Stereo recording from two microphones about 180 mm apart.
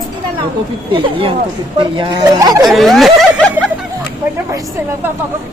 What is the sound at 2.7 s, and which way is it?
Speech, centre (ahead or behind).